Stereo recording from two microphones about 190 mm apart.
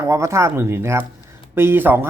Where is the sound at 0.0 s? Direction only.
15° right (ahead or behind).